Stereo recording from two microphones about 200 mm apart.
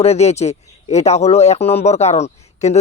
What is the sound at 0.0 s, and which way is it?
Speech, 30° left (ahead or behind).